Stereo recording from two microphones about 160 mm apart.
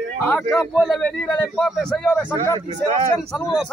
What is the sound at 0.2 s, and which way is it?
A man's voice, 10° left (ahead or behind).